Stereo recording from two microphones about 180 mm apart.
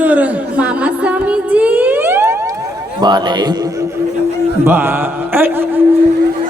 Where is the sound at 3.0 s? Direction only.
25° right (ahead or behind).